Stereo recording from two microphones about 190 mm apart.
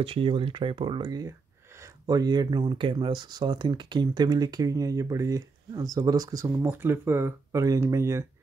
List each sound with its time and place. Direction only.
0.0 s speech: 30° right (ahead or behind)